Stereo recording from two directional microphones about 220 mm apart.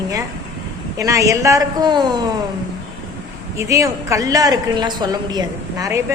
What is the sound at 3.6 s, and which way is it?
A woman's voice, 15° right (ahead or behind).